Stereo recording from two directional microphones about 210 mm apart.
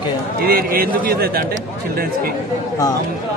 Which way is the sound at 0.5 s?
45° right (ahead or behind).